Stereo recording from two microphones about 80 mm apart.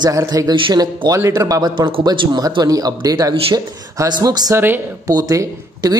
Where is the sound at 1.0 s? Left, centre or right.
Right.